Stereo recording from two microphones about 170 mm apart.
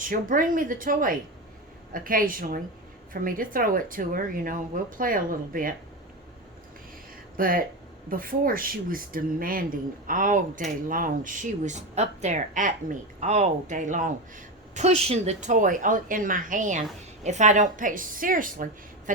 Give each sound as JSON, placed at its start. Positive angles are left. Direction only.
{"t": 0.0, "sound": "speech", "side_deg": -55}
{"t": 7.3, "sound": "speech", "side_deg": -55}